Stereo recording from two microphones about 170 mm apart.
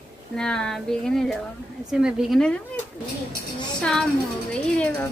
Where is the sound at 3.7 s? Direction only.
5° left (ahead or behind).